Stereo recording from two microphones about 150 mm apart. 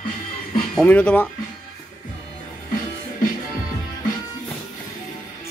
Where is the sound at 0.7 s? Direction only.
10° left (ahead or behind).